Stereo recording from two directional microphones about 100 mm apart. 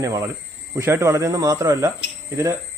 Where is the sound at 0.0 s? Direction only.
30° right (ahead or behind).